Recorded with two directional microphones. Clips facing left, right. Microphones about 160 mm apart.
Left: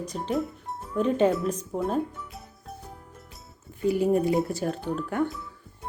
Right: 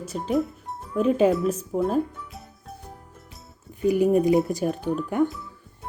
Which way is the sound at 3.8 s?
15° right (ahead or behind).